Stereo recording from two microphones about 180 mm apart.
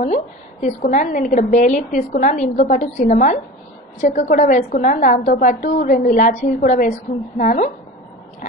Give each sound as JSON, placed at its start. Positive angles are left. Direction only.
{"t": 0.0, "sound": "a woman's voice", "side_deg": 40}